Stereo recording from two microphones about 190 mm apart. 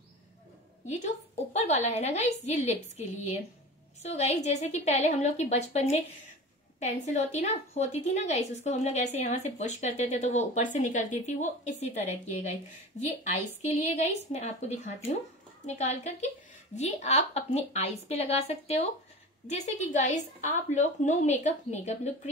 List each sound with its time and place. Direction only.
0.8 s a woman's voice: 40° left (ahead or behind)
7.1 s a woman's voice: 40° left (ahead or behind)
13.2 s a woman's voice: 40° left (ahead or behind)